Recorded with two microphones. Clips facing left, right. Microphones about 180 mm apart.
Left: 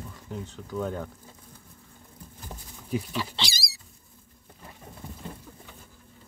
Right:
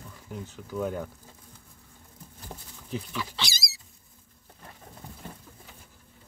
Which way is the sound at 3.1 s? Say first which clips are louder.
Left 2 dB; 30° left (ahead or behind).